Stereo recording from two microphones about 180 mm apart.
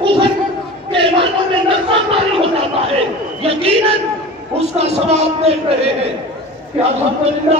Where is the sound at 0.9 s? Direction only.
30° right (ahead or behind).